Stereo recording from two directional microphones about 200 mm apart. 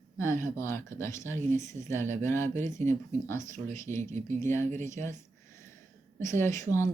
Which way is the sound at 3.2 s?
15° left (ahead or behind).